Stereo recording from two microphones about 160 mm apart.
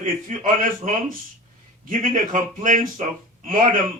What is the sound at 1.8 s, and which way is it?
Speech, 55° right (ahead or behind).